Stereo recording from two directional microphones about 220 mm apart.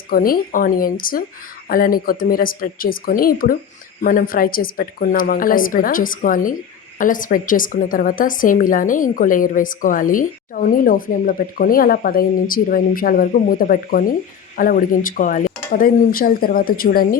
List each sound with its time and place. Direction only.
0.1 s a woman's voice: 40° left (ahead or behind)